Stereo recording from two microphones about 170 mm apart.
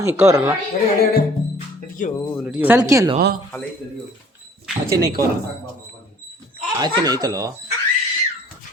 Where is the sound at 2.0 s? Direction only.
50° left (ahead or behind).